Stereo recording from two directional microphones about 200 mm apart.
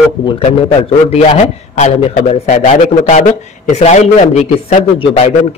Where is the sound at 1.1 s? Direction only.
30° left (ahead or behind).